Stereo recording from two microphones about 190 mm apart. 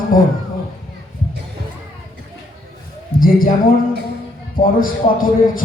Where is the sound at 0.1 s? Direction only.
45° left (ahead or behind).